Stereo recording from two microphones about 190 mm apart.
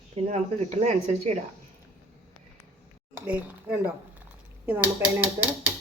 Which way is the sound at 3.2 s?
10° right (ahead or behind).